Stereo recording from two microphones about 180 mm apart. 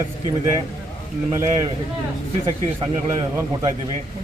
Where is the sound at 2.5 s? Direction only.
20° right (ahead or behind).